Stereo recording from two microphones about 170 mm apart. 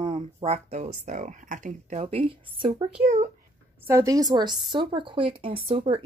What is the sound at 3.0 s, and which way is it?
Speech, 45° right (ahead or behind).